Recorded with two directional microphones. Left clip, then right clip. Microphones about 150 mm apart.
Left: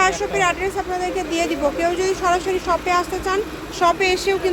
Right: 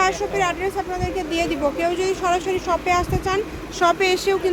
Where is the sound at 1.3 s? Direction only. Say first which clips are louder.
Even; 15° right (ahead or behind).